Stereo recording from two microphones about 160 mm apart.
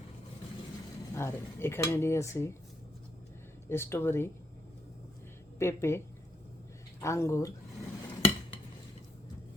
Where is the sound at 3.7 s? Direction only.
15° left (ahead or behind).